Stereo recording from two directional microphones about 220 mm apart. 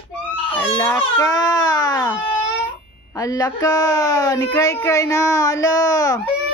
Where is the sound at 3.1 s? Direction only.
15° left (ahead or behind).